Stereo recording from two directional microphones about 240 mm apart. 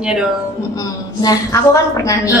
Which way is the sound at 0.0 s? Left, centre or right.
Centre.